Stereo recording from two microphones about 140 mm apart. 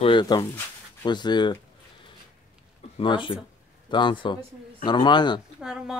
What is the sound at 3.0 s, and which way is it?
Speech, 35° left (ahead or behind).